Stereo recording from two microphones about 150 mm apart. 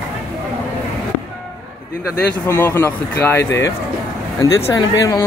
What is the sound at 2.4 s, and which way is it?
Speech, 15° left (ahead or behind).